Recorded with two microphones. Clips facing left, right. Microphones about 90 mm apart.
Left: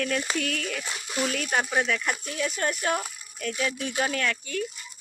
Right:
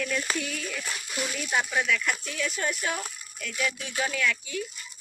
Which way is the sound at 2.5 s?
45° left (ahead or behind).